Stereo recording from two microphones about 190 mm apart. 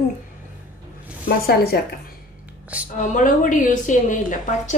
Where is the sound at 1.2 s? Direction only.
55° left (ahead or behind).